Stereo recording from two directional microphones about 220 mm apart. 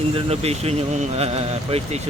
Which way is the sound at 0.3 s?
25° right (ahead or behind).